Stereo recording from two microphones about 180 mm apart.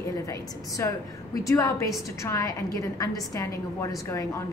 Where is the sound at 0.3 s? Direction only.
20° left (ahead or behind).